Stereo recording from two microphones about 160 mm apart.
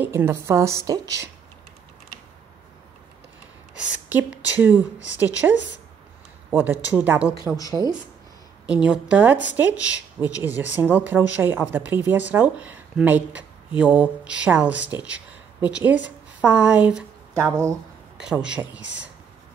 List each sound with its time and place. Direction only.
0.0 s speech: 15° right (ahead or behind)
3.7 s speech: 5° right (ahead or behind)
6.6 s speech: 10° right (ahead or behind)
8.6 s a woman's voice: 5° right (ahead or behind)